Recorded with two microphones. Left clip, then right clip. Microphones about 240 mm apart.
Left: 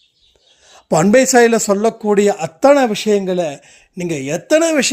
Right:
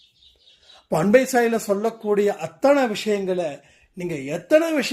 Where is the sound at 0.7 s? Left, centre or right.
Left.